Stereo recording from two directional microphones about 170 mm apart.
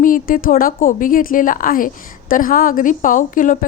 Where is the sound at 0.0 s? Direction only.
50° left (ahead or behind).